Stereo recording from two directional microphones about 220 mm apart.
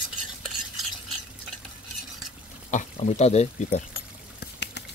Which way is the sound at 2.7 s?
35° left (ahead or behind).